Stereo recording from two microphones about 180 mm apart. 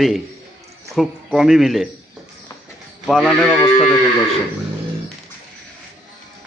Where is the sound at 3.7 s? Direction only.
30° left (ahead or behind).